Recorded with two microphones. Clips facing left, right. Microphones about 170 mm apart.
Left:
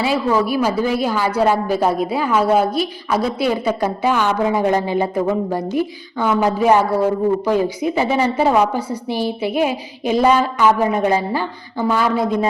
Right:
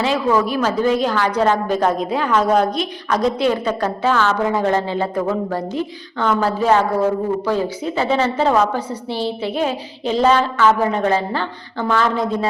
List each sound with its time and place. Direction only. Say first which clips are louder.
0.0 s a woman's voice: even; 10° left (ahead or behind)